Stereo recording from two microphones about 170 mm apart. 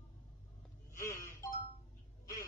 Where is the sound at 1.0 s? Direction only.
15° left (ahead or behind).